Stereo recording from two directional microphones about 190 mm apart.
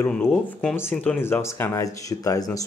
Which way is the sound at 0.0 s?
10° left (ahead or behind).